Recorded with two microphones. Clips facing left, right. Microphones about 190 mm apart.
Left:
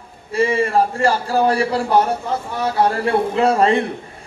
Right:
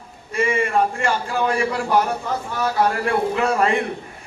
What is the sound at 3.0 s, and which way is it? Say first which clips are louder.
Speech: left 4 dB; 30° left (ahead or behind).